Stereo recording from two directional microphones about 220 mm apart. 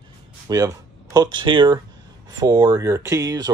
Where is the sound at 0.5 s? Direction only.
15° right (ahead or behind).